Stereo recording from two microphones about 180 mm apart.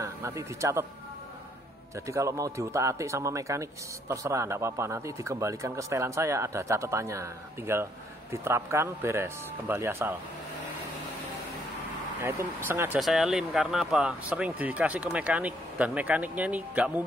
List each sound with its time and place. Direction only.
0.0 s a man's voice: 15° right (ahead or behind)
2.0 s speech: 15° right (ahead or behind)
12.2 s speech: 15° right (ahead or behind)